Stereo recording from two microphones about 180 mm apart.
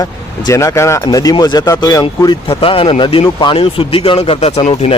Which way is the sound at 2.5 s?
30° left (ahead or behind).